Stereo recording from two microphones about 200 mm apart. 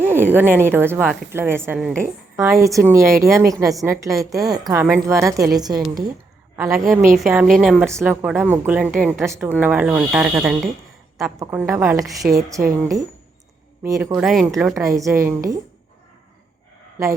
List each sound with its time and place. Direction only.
0.0 s a woman's voice: 10° right (ahead or behind)
7.2 s a woman's voice: centre (ahead or behind)
7.9 s a woman's voice: 15° right (ahead or behind)
14.2 s a woman's voice: 5° right (ahead or behind)
14.8 s a woman's voice: 15° right (ahead or behind)